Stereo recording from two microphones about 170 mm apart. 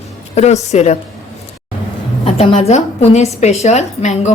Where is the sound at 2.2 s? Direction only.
35° left (ahead or behind).